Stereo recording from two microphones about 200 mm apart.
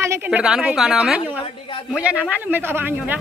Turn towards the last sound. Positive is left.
turn(degrees=-10)  # may be behind; listen again after turning